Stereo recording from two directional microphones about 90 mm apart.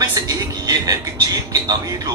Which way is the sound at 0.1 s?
40° right (ahead or behind).